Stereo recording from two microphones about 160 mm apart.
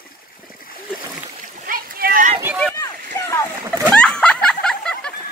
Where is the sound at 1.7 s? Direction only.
60° right (ahead or behind).